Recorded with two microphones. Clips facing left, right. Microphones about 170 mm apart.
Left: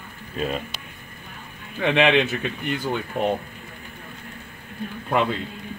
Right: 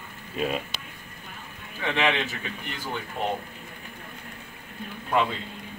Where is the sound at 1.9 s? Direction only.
70° left (ahead or behind).